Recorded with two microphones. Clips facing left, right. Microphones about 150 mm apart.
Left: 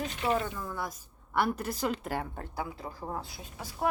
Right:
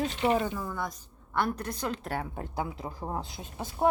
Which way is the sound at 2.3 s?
20° right (ahead or behind).